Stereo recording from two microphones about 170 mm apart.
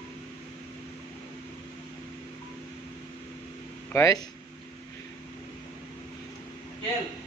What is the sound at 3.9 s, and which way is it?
Speech, 20° left (ahead or behind).